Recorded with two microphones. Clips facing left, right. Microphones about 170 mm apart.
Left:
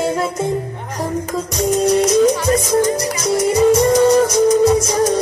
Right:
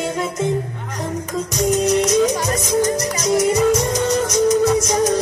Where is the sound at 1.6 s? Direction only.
30° left (ahead or behind).